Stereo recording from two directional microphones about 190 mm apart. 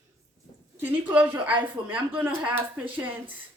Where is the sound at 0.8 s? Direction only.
10° right (ahead or behind).